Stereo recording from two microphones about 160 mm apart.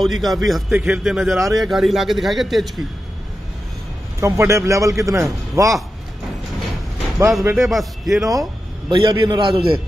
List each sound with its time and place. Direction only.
0.0 s a man's voice: centre (ahead or behind)
4.2 s a man's voice: 20° right (ahead or behind)
7.2 s a man's voice: 20° right (ahead or behind)
7.5 s a man's voice: centre (ahead or behind)
8.3 s a sound: 25° right (ahead or behind)
9.1 s a man's voice: 30° right (ahead or behind)